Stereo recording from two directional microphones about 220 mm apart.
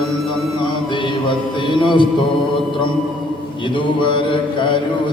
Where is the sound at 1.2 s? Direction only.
20° left (ahead or behind).